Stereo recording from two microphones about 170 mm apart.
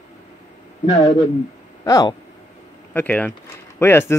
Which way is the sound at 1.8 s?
25° left (ahead or behind).